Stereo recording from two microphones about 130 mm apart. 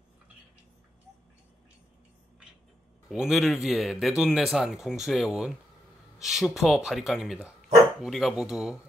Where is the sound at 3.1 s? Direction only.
5° right (ahead or behind).